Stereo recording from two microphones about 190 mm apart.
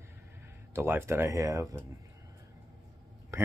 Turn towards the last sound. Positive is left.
turn(degrees=-15)  # may be behind; listen again after turning